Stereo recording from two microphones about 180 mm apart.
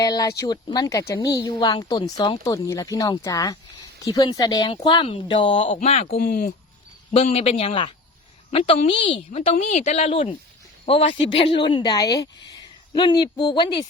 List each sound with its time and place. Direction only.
0.0 s speech: 20° left (ahead or behind); by 6.1 s 35° left (ahead or behind)
6.1 s speech: 55° left (ahead or behind)
7.1 s speech: 35° left (ahead or behind)